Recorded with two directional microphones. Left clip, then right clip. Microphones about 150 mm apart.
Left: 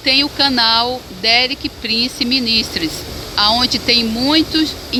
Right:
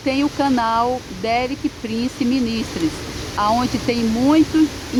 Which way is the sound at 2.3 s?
90° left.